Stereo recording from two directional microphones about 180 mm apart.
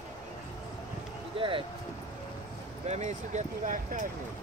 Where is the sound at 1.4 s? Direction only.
30° right (ahead or behind).